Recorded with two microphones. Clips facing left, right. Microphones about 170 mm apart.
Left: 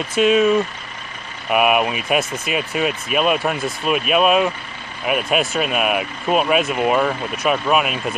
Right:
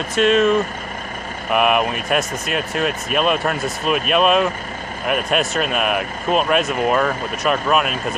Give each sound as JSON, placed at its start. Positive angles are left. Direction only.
{"t": 0.1, "sound": "speech", "side_deg": 5}